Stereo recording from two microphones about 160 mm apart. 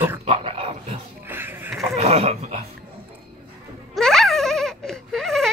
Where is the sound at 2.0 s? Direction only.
40° right (ahead or behind).